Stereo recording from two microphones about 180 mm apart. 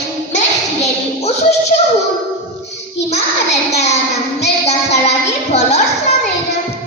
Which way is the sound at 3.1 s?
35° left (ahead or behind).